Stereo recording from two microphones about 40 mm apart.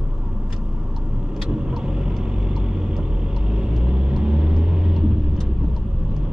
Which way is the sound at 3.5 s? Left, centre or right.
Centre.